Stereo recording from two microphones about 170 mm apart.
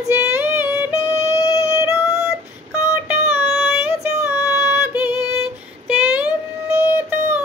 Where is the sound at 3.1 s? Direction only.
10° right (ahead or behind).